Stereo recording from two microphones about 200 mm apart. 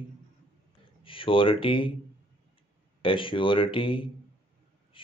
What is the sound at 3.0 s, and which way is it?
Speech, 25° left (ahead or behind).